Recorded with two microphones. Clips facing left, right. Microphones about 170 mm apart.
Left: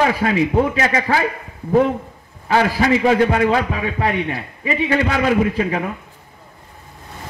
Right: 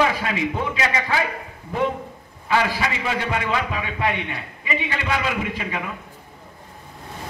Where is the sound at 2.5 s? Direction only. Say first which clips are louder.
Left 6 dB; 45° left (ahead or behind).